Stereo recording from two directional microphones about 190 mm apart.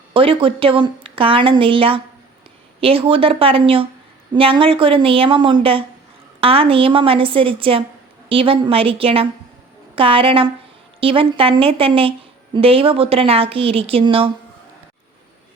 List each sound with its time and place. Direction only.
0.1 s speech: 30° right (ahead or behind)